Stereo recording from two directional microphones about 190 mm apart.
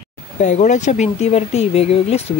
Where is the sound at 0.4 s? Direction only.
40° left (ahead or behind).